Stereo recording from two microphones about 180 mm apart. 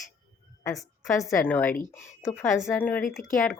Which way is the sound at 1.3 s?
10° left (ahead or behind).